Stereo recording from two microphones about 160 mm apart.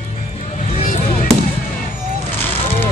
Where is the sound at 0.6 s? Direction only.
45° left (ahead or behind).